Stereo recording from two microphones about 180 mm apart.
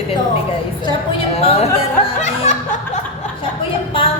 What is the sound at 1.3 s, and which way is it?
Speech, 35° left (ahead or behind).